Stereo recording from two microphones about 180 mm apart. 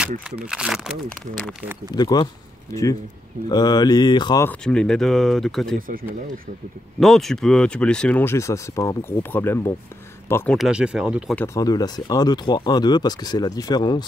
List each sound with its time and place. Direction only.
0.4 s speech: 5° right (ahead or behind)
2.0 s speech: 20° left (ahead or behind)
4.5 s speech: 5° left (ahead or behind)
7.0 s speech: centre (ahead or behind)
10.7 s speech: 5° right (ahead or behind)
11.3 s speech: 15° left (ahead or behind)